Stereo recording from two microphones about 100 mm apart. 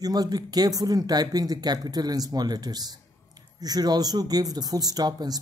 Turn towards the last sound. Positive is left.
turn(degrees=-40)  # may be behind; listen again after turning